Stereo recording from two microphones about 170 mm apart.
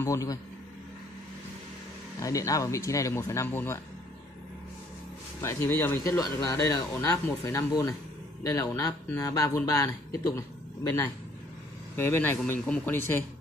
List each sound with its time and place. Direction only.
0.0 s speech: 20° left (ahead or behind)
2.1 s speech: 20° left (ahead or behind)
5.4 s speech: 15° left (ahead or behind)